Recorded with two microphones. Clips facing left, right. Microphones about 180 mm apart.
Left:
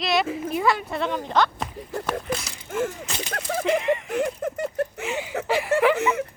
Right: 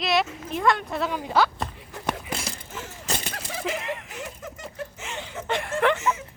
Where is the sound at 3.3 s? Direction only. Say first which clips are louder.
Left 7 dB; 50° left (ahead or behind).